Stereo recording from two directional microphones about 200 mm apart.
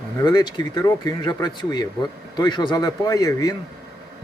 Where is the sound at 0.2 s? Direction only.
20° left (ahead or behind).